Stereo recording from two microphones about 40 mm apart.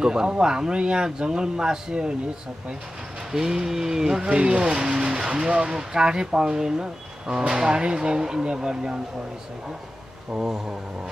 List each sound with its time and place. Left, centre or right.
0.0 s speech: centre
3.3 s speech: centre
10.4 s speech: centre